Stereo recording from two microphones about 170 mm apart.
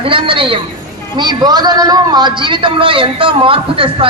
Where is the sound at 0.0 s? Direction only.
30° right (ahead or behind).